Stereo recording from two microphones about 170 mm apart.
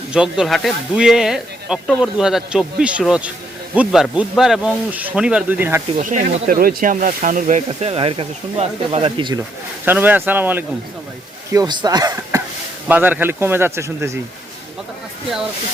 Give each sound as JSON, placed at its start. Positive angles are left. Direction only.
{"t": 0.1, "sound": "speech", "side_deg": -5}
{"t": 6.0, "sound": "speech", "side_deg": -50}
{"t": 9.8, "sound": "speech", "side_deg": -10}
{"t": 11.5, "sound": "speech", "side_deg": -25}
{"t": 12.9, "sound": "speech", "side_deg": -10}